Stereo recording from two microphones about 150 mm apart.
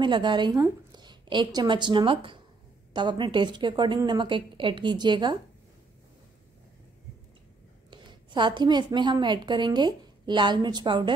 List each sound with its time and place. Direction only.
0.0 s a woman's voice: 30° right (ahead or behind)
7.9 s a woman's voice: 30° right (ahead or behind)